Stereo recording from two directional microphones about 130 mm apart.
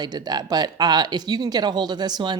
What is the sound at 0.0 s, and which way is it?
Speech, 30° right (ahead or behind).